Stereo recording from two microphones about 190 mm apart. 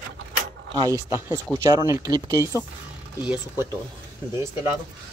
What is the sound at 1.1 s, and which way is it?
Speech, 15° right (ahead or behind).